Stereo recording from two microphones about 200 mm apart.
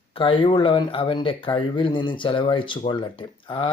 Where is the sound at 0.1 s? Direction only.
25° left (ahead or behind).